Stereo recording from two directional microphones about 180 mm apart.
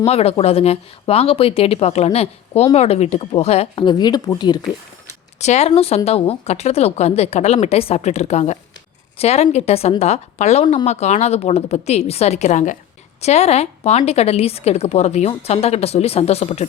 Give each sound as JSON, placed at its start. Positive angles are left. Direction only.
{"t": 0.0, "sound": "a woman's voice", "side_deg": 35}
{"t": 5.4, "sound": "a woman's voice", "side_deg": 40}